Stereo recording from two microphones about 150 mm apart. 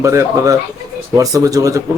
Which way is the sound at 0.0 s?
20° right (ahead or behind).